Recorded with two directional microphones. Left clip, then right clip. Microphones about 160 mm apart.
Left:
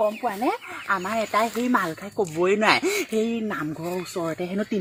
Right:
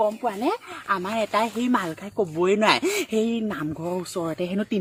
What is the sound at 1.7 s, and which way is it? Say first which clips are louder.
Speech: left 1 dB; 30° right (ahead or behind).